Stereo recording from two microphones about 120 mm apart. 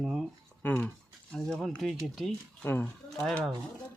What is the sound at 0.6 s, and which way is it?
Speech, 10° left (ahead or behind).